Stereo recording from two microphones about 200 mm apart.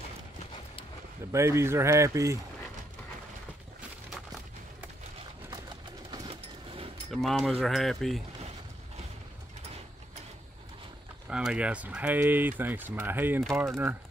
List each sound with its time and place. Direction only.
1.3 s speech: 15° right (ahead or behind)
6.1 s a sound: 25° right (ahead or behind)
7.1 s speech: centre (ahead or behind)
11.2 s speech: 5° right (ahead or behind)